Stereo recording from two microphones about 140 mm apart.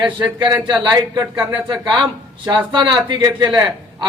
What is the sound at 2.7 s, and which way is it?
Speech, 30° right (ahead or behind).